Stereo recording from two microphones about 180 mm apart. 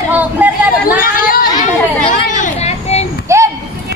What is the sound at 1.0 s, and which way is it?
Chatter, 50° left (ahead or behind).